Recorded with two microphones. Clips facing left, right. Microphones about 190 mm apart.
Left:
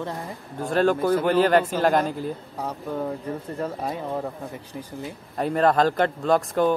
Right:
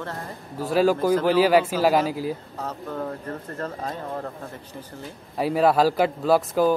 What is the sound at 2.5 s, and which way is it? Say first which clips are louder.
Speech: left 2 dB; 10° left (ahead or behind).